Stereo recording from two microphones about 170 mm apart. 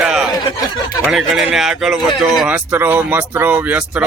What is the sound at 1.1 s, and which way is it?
Speech, centre (ahead or behind).